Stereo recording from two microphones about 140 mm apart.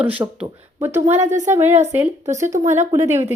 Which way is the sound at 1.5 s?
20° right (ahead or behind).